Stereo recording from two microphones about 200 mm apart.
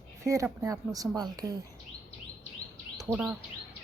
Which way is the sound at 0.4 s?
15° right (ahead or behind).